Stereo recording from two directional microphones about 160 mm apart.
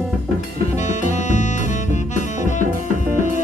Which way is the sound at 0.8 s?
50° left (ahead or behind).